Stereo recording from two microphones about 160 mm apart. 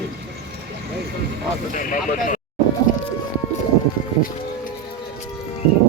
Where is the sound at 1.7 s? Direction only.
55° left (ahead or behind).